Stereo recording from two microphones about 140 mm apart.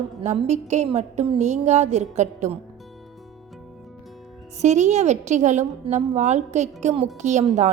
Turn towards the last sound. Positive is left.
turn(degrees=-55)  # may be behind; listen again after turning